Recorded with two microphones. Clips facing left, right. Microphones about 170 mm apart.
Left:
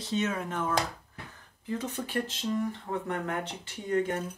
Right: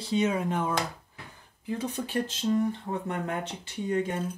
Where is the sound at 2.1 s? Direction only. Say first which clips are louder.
Right 4 dB; 30° right (ahead or behind).